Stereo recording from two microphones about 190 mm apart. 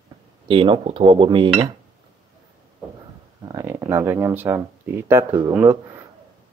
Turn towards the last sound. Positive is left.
turn(degrees=-15)  # may be behind; listen again after turning